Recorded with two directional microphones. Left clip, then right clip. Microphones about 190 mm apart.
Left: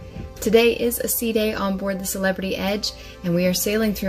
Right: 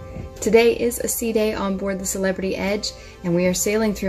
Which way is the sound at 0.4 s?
Centre (ahead or behind).